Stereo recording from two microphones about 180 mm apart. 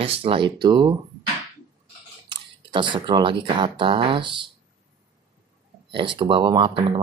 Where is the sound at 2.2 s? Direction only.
25° right (ahead or behind).